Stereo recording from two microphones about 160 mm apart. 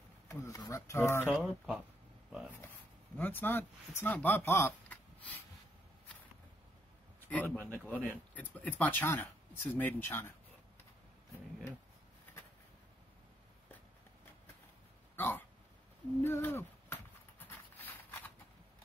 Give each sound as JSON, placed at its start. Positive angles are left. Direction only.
{"t": 0.3, "sound": "speech", "side_deg": 20}
{"t": 1.3, "sound": "speech", "side_deg": -5}
{"t": 3.2, "sound": "speech", "side_deg": 10}
{"t": 7.2, "sound": "speech", "side_deg": 10}
{"t": 15.1, "sound": "hiccup", "side_deg": 10}
{"t": 16.2, "sound": "a sound", "side_deg": 15}